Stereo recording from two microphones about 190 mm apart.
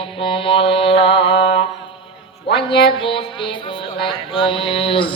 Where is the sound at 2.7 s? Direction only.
60° left (ahead or behind).